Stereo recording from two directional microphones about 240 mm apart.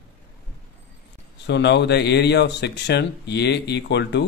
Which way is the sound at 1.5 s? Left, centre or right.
Left.